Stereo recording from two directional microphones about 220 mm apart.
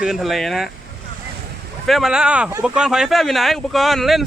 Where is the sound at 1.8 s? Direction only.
Centre (ahead or behind).